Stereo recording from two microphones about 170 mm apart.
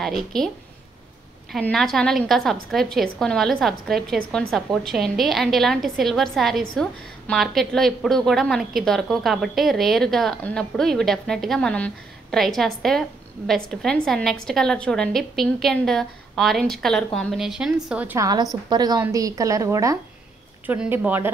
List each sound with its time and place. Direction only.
0.0 s a woman's voice: centre (ahead or behind)
1.5 s a woman's voice: centre (ahead or behind)
18.2 s a woman's voice: 20° right (ahead or behind)